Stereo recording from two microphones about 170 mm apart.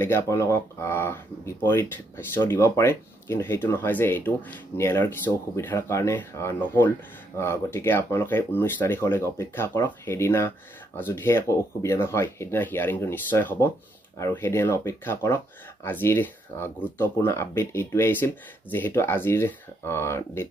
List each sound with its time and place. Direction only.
0.0 s speech: 15° left (ahead or behind)